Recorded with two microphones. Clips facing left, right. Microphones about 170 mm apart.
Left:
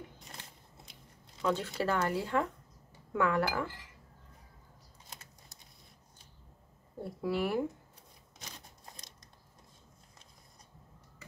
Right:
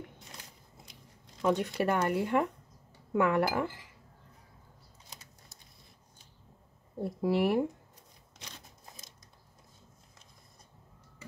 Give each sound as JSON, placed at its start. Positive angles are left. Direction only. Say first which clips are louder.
{"t": 1.4, "sound": "speech", "louder": "right 3 dB", "side_deg": -15}
{"t": 7.0, "sound": "speech", "louder": "right 5 dB", "side_deg": -25}
{"t": 8.4, "sound": "a sound", "louder": "even", "side_deg": -5}